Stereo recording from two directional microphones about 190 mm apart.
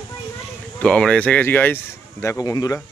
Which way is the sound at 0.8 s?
5° left (ahead or behind).